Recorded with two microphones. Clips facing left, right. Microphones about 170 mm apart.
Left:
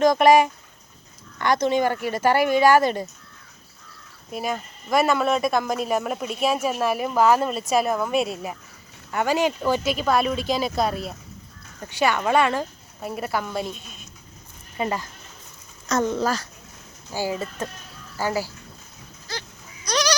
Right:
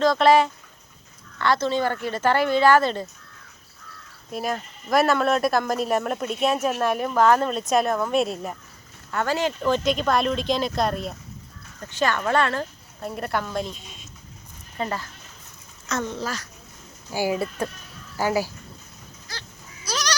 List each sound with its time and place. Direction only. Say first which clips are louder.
0.0 s a woman's voice: left 2 dB; 15° left (ahead or behind)
4.3 s a woman's voice: even; centre (ahead or behind)
14.8 s a woman's voice: left 2 dB; 15° left (ahead or behind)
15.9 s speech: left 5 dB; 35° left (ahead or behind)
17.1 s speech: right 3 dB; 15° right (ahead or behind)
19.8 s goat: left 5 dB; 5° right (ahead or behind)